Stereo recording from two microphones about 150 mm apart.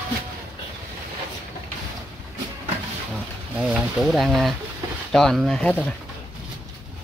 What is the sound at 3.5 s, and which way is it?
Speech, 5° right (ahead or behind).